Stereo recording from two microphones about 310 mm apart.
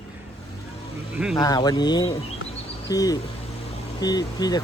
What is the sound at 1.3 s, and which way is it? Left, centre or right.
Speech, centre.